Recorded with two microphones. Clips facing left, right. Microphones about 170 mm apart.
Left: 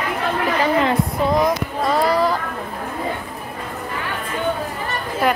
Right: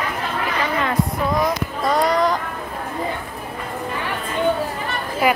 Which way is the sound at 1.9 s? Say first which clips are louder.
Even; 5° left (ahead or behind).